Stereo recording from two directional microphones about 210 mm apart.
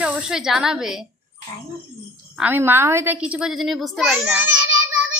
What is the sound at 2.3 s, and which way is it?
A woman's voice, 10° right (ahead or behind).